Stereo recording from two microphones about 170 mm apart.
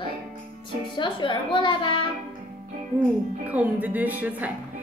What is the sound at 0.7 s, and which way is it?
Speech, 30° left (ahead or behind).